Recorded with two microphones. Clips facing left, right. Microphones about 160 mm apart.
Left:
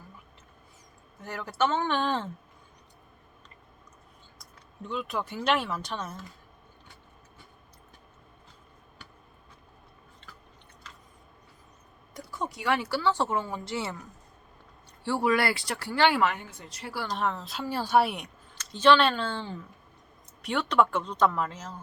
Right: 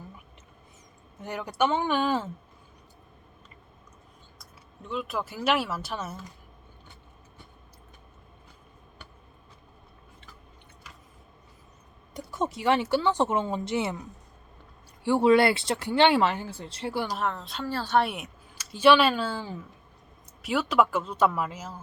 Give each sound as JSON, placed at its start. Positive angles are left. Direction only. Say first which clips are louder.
{"t": 1.2, "sound": "speech", "louder": "right 2 dB", "side_deg": -15}
{"t": 4.4, "sound": "speech", "louder": "left 5 dB", "side_deg": 0}
{"t": 12.1, "sound": "speech", "louder": "right 5 dB", "side_deg": -25}
{"t": 15.0, "sound": "speech", "louder": "right 6 dB", "side_deg": -20}
{"t": 17.1, "sound": "speech", "louder": "even", "side_deg": 0}
{"t": 17.7, "sound": "speech", "louder": "left 1 dB", "side_deg": 15}